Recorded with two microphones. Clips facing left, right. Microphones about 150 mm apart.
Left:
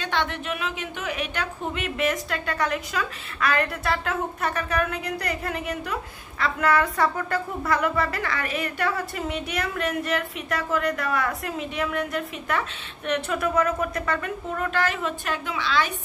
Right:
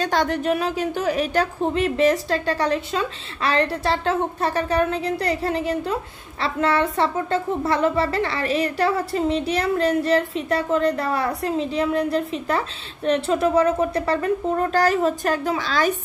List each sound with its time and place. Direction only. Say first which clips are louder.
0.0 s a woman's voice: right 7 dB; 40° right (ahead or behind)